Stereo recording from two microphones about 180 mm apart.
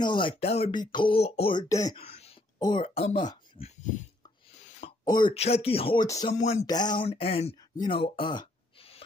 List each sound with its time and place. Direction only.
0.0 s speech: 25° left (ahead or behind)
1.7 s speech: 20° left (ahead or behind)
2.0 s speech: 35° left (ahead or behind)
4.5 s a sound: 35° left (ahead or behind)
5.0 s speech: 25° left (ahead or behind)
6.0 s speech: 20° left (ahead or behind)
6.3 s speech: 40° left (ahead or behind)
6.6 s speech: 20° left (ahead or behind)
7.1 s speech: 35° left (ahead or behind)
7.8 s a sound: 30° left (ahead or behind)